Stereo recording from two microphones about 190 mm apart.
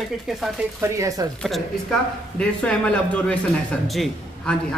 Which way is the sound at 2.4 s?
5° left (ahead or behind).